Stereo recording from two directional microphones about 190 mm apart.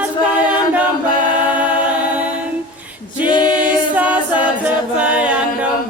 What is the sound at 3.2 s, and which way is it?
Choir, 25° left (ahead or behind).